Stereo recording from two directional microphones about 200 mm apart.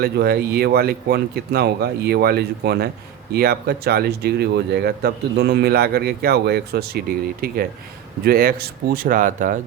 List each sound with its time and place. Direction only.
0.0 s speech: 50° right (ahead or behind)